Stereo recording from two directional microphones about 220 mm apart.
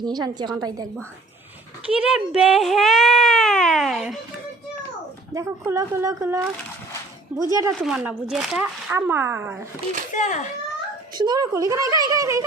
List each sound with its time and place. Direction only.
0.0 s a woman's voice: 20° right (ahead or behind)
1.9 s speech: 5° right (ahead or behind)
5.3 s speech: 15° right (ahead or behind)
7.8 s speech: 5° right (ahead or behind)
10.2 s a child's voice: 35° left (ahead or behind)
11.1 s speech: 20° right (ahead or behind)